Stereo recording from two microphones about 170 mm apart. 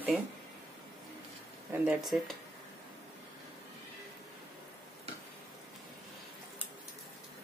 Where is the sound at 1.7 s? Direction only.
5° right (ahead or behind).